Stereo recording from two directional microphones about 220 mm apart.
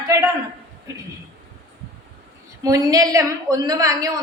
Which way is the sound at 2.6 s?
15° right (ahead or behind).